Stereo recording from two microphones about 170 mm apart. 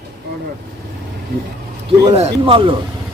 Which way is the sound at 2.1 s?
35° right (ahead or behind).